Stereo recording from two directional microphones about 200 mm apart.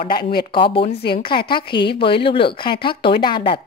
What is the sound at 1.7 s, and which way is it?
Speech, 55° left (ahead or behind).